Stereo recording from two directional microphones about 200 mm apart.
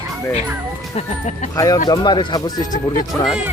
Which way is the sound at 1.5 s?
15° left (ahead or behind).